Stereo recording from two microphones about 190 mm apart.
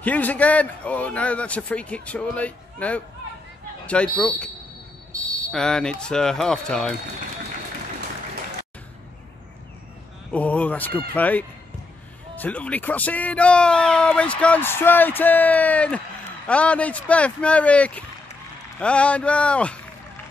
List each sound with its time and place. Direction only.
0.0 s speech: 10° left (ahead or behind)
5.5 s speech: 5° left (ahead or behind)
10.3 s speech: 5° left (ahead or behind)